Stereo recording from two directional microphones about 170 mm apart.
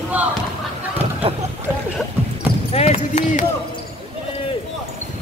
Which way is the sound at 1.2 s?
35° right (ahead or behind).